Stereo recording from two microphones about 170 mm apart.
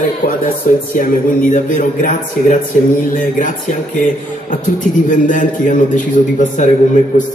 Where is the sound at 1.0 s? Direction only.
50° left (ahead or behind).